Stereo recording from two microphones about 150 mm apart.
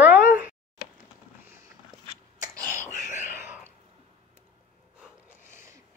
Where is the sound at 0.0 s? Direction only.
10° right (ahead or behind).